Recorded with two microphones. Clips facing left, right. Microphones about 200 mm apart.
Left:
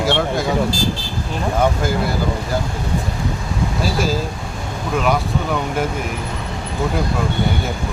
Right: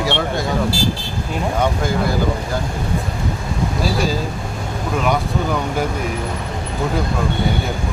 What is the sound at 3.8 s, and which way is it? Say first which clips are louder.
Speech: even; centre (ahead or behind).